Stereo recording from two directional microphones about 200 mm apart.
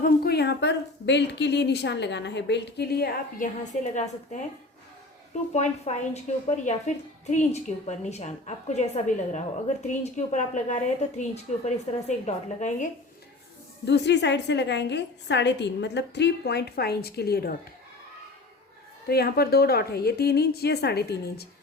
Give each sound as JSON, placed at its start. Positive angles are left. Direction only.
{"t": 0.0, "sound": "a woman's voice", "side_deg": 55}
{"t": 5.9, "sound": "speech", "side_deg": 30}
{"t": 13.8, "sound": "a woman's voice", "side_deg": 60}
{"t": 19.0, "sound": "a woman's voice", "side_deg": 50}